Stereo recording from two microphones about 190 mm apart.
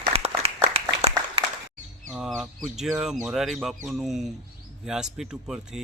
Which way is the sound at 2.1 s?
Centre (ahead or behind).